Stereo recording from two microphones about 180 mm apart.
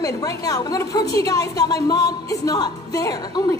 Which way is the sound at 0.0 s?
20° left (ahead or behind).